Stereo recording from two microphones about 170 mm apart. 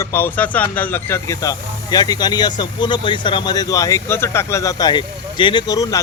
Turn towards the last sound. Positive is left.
turn(degrees=20)  # may be behind; listen again after turning